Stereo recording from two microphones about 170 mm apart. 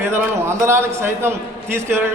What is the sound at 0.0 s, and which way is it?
A man's voice, 15° right (ahead or behind).